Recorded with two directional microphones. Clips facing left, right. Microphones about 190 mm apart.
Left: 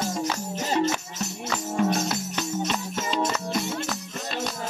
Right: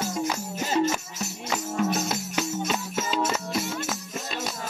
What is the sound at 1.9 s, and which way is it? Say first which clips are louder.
Music: left 2 dB; 5° right (ahead or behind).